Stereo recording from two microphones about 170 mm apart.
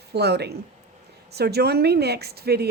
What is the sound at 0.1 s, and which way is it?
Speech, 75° right (ahead or behind).